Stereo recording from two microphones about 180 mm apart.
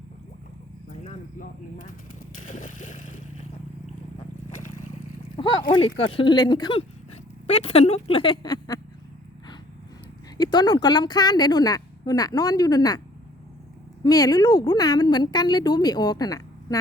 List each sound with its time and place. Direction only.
0.9 s a sound: 45° left (ahead or behind)
5.4 s speech: 25° left (ahead or behind)
10.3 s a woman's voice: 25° left (ahead or behind)
14.0 s a woman's voice: 20° left (ahead or behind)